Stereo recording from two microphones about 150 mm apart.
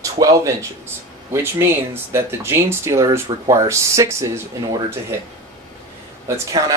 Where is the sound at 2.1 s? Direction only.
15° right (ahead or behind).